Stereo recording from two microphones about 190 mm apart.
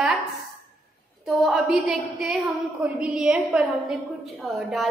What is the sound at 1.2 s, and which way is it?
A woman's voice, centre (ahead or behind).